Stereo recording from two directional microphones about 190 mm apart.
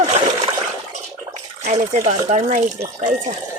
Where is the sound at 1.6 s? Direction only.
40° right (ahead or behind).